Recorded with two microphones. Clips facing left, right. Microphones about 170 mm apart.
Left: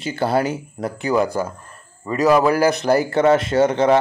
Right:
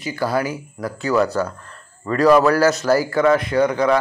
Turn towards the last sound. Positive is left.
turn(degrees=25)  # may be behind; listen again after turning